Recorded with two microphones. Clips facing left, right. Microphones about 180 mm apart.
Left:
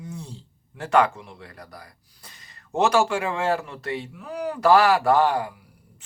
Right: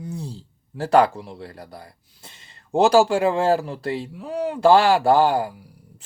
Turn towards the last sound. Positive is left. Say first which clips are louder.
# right 3 dB
turn(degrees=-30)  # may be behind; listen again after turning